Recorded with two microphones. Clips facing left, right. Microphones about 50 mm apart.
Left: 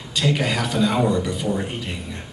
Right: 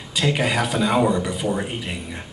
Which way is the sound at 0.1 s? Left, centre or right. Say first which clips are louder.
Right 1 dB; centre.